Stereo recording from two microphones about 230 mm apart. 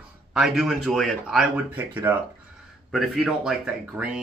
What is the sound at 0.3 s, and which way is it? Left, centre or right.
Speech, centre.